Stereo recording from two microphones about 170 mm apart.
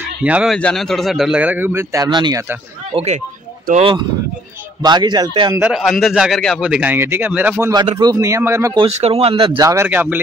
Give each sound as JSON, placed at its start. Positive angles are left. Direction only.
{"t": 0.2, "sound": "speech", "side_deg": -5}
{"t": 0.6, "sound": "a man's voice", "side_deg": 5}
{"t": 2.0, "sound": "speech", "side_deg": -25}
{"t": 2.9, "sound": "speech", "side_deg": -35}
{"t": 4.8, "sound": "speech", "side_deg": -25}
{"t": 5.5, "sound": "speech", "side_deg": -5}
{"t": 7.7, "sound": "speech", "side_deg": -25}
{"t": 8.7, "sound": "speech", "side_deg": -35}